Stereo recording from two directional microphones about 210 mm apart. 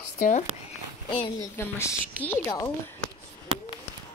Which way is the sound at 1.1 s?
25° left (ahead or behind).